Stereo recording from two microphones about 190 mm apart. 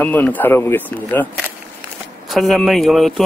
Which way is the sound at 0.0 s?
10° left (ahead or behind).